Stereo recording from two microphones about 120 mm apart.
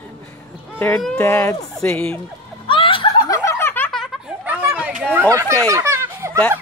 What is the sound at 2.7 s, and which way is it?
Snicker, 45° left (ahead or behind).